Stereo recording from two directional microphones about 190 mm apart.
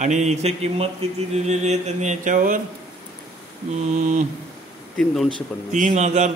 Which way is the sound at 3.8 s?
40° right (ahead or behind).